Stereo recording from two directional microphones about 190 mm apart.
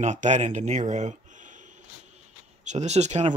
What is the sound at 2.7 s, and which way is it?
Speech, 35° right (ahead or behind).